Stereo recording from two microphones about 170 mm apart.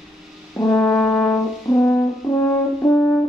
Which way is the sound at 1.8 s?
15° left (ahead or behind).